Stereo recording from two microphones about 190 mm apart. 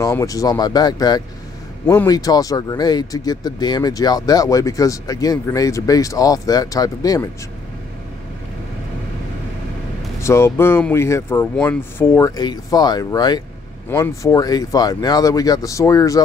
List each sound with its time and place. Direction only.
0.0 s speech: 15° left (ahead or behind)
10.2 s speech: 15° left (ahead or behind)